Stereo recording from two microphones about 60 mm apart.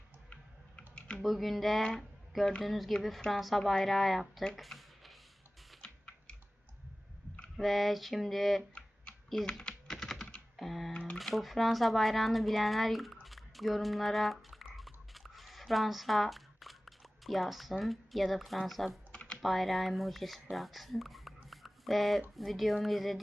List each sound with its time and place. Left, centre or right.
0.8 s typing: centre
1.2 s speech: centre
1.8 s speech: centre
2.6 s speech: centre
4.5 s a sound: centre
5.8 s typing: centre
7.5 s speech: centre
9.5 s typing: centre
10.6 s speech: centre
13.2 s a sound: centre
19.1 s computer keyboard: centre
19.4 s speech: centre